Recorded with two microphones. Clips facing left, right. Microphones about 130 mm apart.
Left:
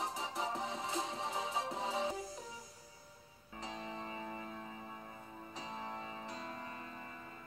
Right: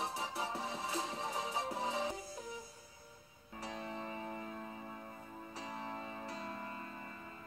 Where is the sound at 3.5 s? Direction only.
20° left (ahead or behind).